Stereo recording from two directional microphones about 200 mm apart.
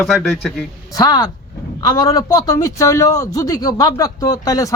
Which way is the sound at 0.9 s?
20° left (ahead or behind).